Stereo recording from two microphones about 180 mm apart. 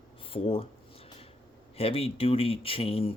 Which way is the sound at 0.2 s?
30° left (ahead or behind).